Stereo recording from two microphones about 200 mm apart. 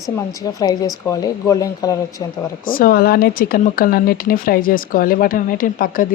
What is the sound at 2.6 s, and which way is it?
Speech, 45° left (ahead or behind).